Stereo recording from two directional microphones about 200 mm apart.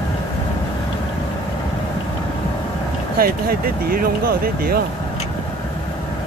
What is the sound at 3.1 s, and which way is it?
Speech, 50° right (ahead or behind).